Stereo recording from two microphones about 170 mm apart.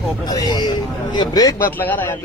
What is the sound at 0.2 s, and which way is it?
A man's voice, 25° left (ahead or behind).